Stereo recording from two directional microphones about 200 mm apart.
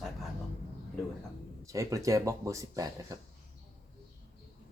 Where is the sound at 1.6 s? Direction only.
15° right (ahead or behind).